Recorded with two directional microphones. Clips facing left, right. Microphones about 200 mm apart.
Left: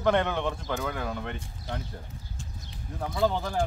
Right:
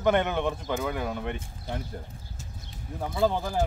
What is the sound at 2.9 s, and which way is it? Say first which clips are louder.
Speech: right 1 dB; 5° right (ahead or behind).